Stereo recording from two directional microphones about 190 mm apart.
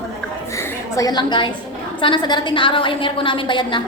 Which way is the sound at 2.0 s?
25° left (ahead or behind).